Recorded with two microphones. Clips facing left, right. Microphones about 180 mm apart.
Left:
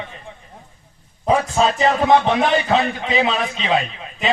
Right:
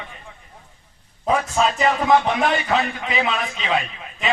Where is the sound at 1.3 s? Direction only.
30° left (ahead or behind).